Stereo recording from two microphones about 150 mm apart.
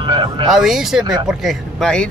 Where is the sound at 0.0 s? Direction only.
30° right (ahead or behind).